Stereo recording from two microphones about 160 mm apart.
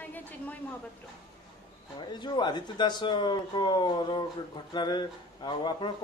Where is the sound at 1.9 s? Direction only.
30° left (ahead or behind).